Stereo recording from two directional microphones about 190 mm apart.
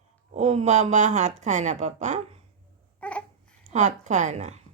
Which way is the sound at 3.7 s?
40° right (ahead or behind).